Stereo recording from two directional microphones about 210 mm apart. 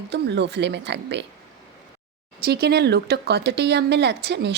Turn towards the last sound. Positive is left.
turn(degrees=-50)  # may be behind; listen again after turning